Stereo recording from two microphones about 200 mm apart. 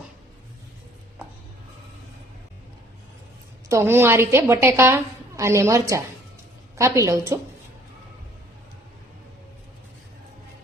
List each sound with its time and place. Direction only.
3.7 s a woman's voice: 15° right (ahead or behind)